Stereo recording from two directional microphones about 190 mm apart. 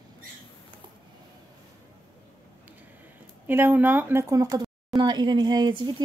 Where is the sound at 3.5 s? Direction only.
10° right (ahead or behind).